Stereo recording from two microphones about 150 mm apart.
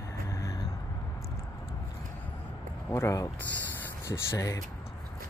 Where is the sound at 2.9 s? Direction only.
20° left (ahead or behind).